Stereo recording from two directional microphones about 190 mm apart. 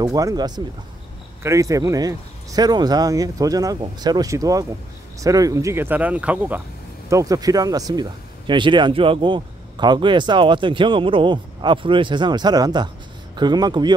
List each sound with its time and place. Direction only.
0.0 s speech: 20° right (ahead or behind)